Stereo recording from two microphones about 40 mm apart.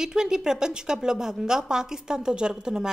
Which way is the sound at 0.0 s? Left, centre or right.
Centre.